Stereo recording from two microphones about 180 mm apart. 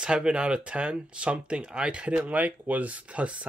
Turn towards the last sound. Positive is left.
turn(degrees=-5)  # may be behind; listen again after turning